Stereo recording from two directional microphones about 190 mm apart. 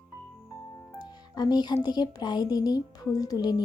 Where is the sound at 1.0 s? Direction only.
20° left (ahead or behind).